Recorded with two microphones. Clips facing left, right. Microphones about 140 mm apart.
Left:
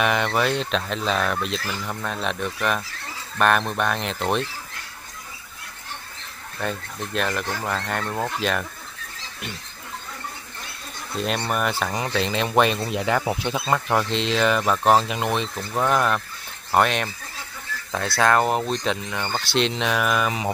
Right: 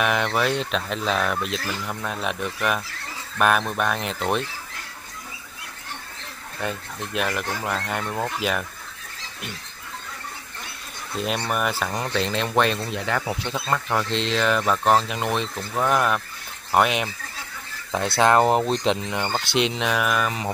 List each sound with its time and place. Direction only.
0.0 s speech: centre (ahead or behind)
6.6 s speech: 10° right (ahead or behind)
11.1 s speech: 5° right (ahead or behind)
17.9 s speech: 25° right (ahead or behind); by 20.2 s centre (ahead or behind)
20.2 s mantra: 15° left (ahead or behind)